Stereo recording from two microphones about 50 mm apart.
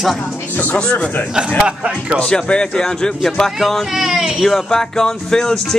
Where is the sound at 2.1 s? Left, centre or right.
Centre.